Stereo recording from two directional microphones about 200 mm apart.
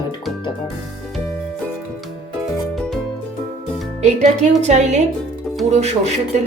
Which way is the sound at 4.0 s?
35° right (ahead or behind).